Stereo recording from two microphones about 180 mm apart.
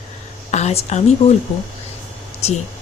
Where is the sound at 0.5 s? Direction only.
35° left (ahead or behind).